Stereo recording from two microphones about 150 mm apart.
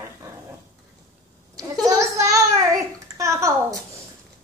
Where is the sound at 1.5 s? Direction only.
25° right (ahead or behind).